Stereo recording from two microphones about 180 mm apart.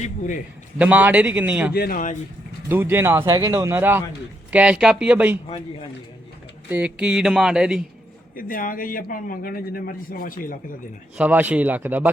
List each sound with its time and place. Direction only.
0.8 s speech: 10° right (ahead or behind)
1.7 s speech: 55° left (ahead or behind)
2.6 s speech: 10° right (ahead or behind)
6.7 s speech: 10° right (ahead or behind)
8.4 s speech: 50° left (ahead or behind)
11.2 s speech: 10° right (ahead or behind)